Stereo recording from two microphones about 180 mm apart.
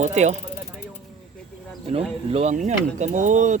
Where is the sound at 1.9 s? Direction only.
35° right (ahead or behind).